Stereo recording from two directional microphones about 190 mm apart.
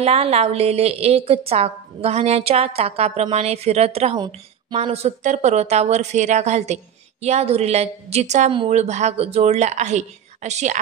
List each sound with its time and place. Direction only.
0.0 s a woman's voice: 30° right (ahead or behind)